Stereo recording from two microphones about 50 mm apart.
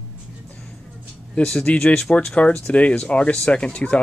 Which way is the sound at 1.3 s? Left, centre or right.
Centre.